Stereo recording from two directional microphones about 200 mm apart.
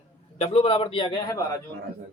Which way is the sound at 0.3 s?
30° left (ahead or behind).